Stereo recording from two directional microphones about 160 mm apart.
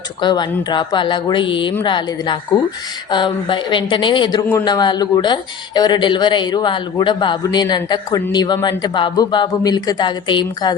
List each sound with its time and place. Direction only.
0.2 s speech: 30° left (ahead or behind)